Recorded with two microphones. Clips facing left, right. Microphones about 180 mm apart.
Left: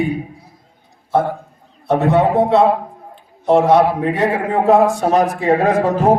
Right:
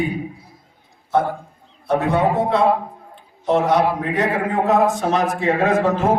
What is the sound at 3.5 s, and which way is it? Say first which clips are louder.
A man's voice: left 5 dB; 30° left (ahead or behind).